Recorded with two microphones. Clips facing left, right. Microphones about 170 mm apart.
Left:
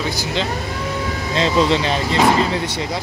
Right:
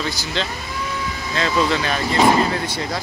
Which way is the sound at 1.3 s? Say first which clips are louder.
Left 3 dB; 25° left (ahead or behind).